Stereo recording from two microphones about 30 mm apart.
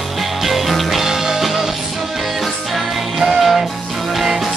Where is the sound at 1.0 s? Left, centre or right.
Centre.